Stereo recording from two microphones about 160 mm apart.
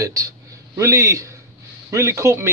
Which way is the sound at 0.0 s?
20° right (ahead or behind).